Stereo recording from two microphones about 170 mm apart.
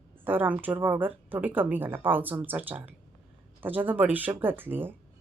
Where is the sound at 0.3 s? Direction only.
10° right (ahead or behind).